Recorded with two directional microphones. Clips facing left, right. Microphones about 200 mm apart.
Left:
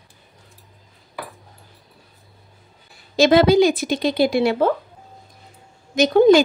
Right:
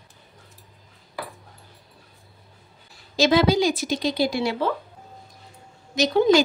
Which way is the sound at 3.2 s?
60° left (ahead or behind).